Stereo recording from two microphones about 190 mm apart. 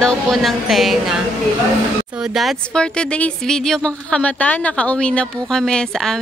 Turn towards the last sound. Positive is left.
turn(degrees=5)  # may be behind; listen again after turning